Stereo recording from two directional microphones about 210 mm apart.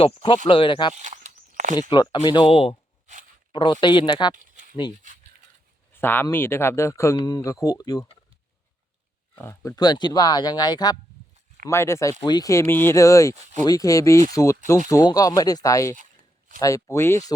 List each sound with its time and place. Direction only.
0.0 s speech: 25° left (ahead or behind)
0.9 s a sound: 35° right (ahead or behind)
1.9 s speech: 20° left (ahead or behind)
4.4 s a sound: 40° right (ahead or behind)
5.0 s speech: 35° right (ahead or behind)
5.9 s speech: 10° left (ahead or behind)
9.4 s speech: 15° left (ahead or behind)
16.0 s a sound: 40° right (ahead or behind)
16.6 s speech: 15° left (ahead or behind)